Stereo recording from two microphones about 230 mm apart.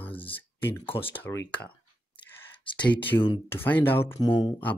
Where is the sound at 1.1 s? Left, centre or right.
Centre.